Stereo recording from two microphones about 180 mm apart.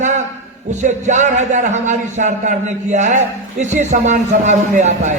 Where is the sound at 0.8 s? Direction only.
40° right (ahead or behind).